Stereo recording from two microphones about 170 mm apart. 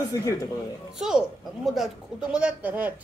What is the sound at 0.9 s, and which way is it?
Speech, 5° right (ahead or behind).